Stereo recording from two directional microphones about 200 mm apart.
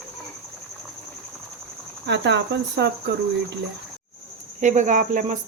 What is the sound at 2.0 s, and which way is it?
Speech, 60° right (ahead or behind).